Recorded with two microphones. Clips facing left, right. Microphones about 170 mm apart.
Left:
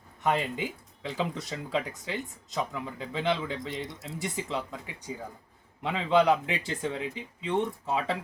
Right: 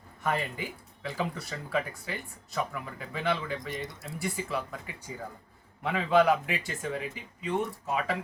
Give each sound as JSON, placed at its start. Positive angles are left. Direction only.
{"t": 0.2, "sound": "speech", "side_deg": 20}